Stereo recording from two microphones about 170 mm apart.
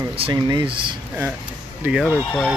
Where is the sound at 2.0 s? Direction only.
10° left (ahead or behind).